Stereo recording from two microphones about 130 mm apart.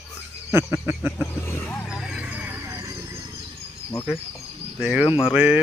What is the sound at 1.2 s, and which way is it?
Speech, 20° left (ahead or behind).